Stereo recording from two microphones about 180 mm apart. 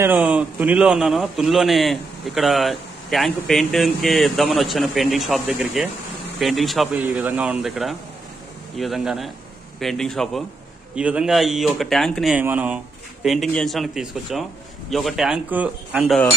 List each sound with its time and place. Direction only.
0.0 s a man's voice: 10° right (ahead or behind)